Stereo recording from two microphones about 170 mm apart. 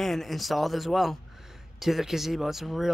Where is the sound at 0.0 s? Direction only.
Centre (ahead or behind).